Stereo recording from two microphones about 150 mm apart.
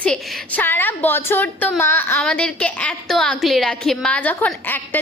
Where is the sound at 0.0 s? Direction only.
10° left (ahead or behind).